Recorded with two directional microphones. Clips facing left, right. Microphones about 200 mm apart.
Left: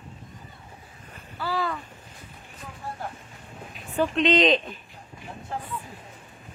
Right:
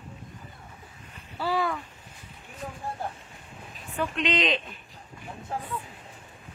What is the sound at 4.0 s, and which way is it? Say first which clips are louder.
Speech: left 6 dB; 35° left (ahead or behind).